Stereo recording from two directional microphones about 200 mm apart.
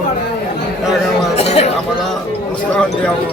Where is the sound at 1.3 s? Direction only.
30° left (ahead or behind).